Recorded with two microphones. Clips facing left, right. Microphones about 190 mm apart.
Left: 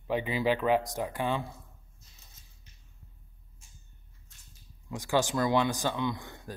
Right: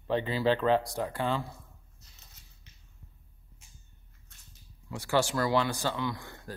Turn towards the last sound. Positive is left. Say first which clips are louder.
# left 2 dB
turn(degrees=20)  # may be behind; listen again after turning